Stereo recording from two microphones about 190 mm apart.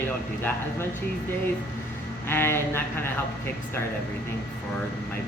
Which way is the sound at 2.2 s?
10° left (ahead or behind).